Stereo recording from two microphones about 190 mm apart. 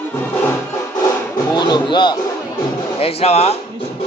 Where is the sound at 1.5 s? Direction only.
20° left (ahead or behind).